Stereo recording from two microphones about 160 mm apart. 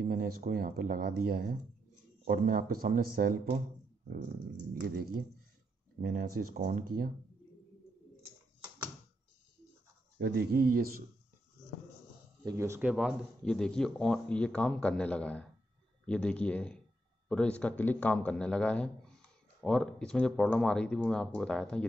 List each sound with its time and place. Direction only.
0.1 s speech: 70° right (ahead or behind)
10.1 s speech: 85° right; by 11.1 s 70° right (ahead or behind)
12.4 s speech: 15° right (ahead or behind)
12.9 s speech: centre (ahead or behind)